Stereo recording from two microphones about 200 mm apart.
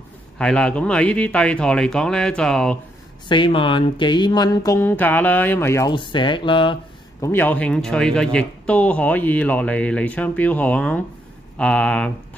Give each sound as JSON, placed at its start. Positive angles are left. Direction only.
{"t": 0.4, "sound": "a man's voice", "side_deg": 5}
{"t": 3.3, "sound": "speech", "side_deg": 25}
{"t": 7.2, "sound": "a man's voice", "side_deg": 10}